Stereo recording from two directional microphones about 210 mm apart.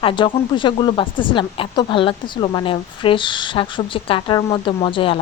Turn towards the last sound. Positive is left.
turn(degrees=25)  # may be behind; listen again after turning